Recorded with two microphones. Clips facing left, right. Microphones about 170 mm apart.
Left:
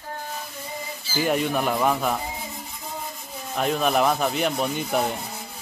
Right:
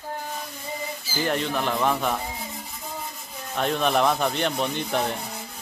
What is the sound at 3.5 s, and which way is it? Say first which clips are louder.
Speech: left 1 dB; 5° left (ahead or behind).